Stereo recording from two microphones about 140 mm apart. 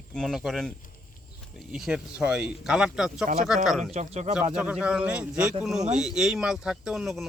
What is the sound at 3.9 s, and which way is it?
Speech, 55° right (ahead or behind).